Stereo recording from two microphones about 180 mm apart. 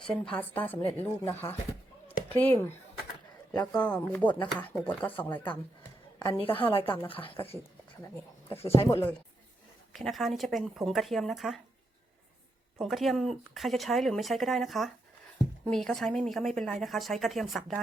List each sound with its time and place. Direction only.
0.1 s a woman's voice: 5° left (ahead or behind)
6.1 s a woman's voice: 30° left (ahead or behind)
6.8 s a woman's voice: 10° left (ahead or behind)
7.1 s speech: 30° left (ahead or behind)
8.6 s speech: 35° left (ahead or behind)
8.9 s a woman's voice: 15° left (ahead or behind)
9.9 s speech: centre (ahead or behind)
12.8 s speech: centre (ahead or behind)